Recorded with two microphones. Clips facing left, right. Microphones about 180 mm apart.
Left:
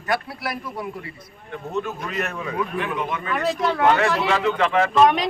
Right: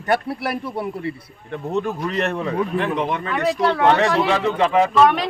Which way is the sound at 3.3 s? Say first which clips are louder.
Right 3 dB; centre (ahead or behind).